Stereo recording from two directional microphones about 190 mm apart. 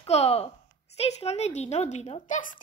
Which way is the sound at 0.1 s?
30° left (ahead or behind).